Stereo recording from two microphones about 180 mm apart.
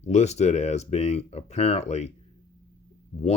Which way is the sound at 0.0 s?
40° left (ahead or behind).